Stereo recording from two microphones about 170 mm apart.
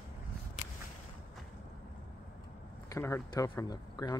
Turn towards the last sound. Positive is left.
turn(degrees=20)  # may be behind; listen again after turning